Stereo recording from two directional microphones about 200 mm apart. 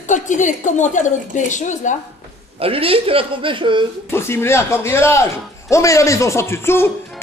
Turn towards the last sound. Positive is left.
turn(degrees=10)  # may be behind; listen again after turning